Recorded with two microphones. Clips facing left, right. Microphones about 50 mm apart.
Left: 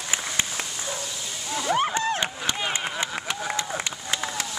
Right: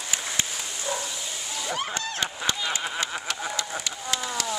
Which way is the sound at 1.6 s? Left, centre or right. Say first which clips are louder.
Left 8 dB; left.